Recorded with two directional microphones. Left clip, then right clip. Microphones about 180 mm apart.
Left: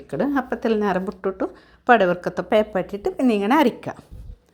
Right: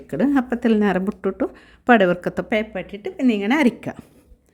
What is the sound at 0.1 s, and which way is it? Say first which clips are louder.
A woman's voice: right 2 dB; 25° right (ahead or behind).